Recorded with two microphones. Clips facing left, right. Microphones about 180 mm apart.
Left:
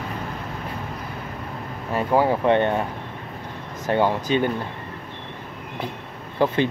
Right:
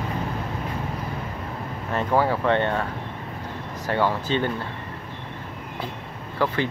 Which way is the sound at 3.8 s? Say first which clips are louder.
Left 3 dB; 20° left (ahead or behind).